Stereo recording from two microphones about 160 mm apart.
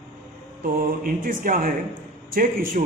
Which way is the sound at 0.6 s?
65° right (ahead or behind).